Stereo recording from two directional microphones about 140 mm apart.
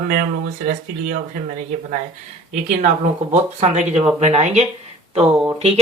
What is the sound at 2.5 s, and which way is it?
Speech, 65° right (ahead or behind).